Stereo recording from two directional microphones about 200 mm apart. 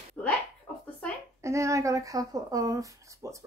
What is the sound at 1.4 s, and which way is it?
A woman's voice, 15° right (ahead or behind).